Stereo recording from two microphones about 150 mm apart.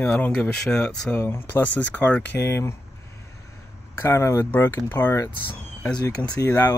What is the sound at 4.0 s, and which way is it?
Speech, 15° left (ahead or behind).